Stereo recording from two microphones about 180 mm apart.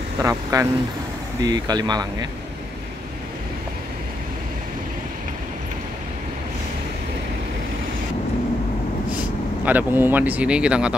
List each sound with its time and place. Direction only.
0.2 s speech: 15° right (ahead or behind)
9.1 s speech: 10° right (ahead or behind)